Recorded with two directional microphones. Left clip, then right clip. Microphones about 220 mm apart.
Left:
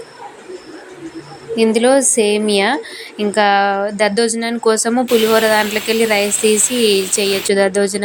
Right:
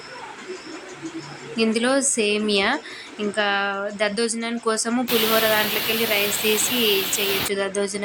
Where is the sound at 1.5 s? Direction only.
20° left (ahead or behind).